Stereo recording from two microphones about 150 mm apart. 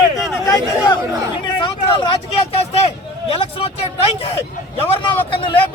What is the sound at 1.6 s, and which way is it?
Vehicle, 30° left (ahead or behind).